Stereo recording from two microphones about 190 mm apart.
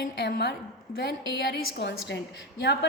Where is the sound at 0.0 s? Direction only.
60° left (ahead or behind).